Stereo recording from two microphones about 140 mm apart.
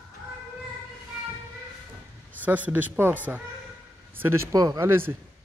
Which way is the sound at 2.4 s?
10° right (ahead or behind).